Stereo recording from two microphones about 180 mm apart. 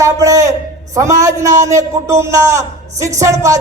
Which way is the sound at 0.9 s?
15° right (ahead or behind).